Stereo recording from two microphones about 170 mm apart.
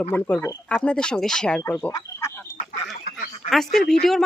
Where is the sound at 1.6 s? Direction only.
15° left (ahead or behind).